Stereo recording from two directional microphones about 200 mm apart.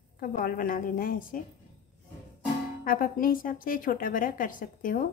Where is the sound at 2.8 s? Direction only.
45° left (ahead or behind).